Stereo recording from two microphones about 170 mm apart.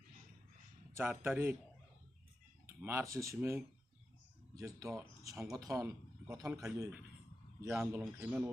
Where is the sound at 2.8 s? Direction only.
15° right (ahead or behind).